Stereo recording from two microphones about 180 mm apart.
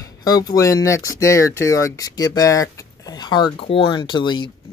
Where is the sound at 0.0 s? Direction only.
20° left (ahead or behind).